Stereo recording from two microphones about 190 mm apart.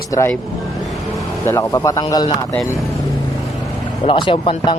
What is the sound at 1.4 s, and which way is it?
Speech, 15° left (ahead or behind).